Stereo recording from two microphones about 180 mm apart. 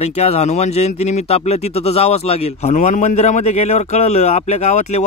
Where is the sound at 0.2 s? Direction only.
35° left (ahead or behind).